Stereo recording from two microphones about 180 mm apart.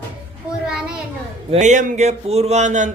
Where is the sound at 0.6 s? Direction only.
5° right (ahead or behind).